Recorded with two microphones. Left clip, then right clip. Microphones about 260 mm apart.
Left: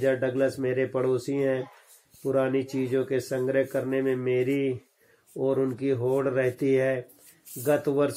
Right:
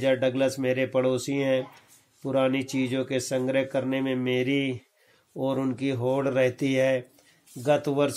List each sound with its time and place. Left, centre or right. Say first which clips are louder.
0.0 s speech: right 1 dB; right